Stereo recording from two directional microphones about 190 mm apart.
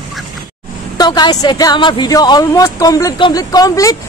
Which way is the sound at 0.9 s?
20° left (ahead or behind).